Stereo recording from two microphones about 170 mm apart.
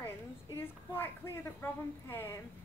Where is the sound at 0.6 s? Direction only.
15° left (ahead or behind).